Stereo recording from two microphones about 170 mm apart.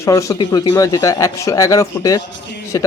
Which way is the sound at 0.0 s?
20° left (ahead or behind).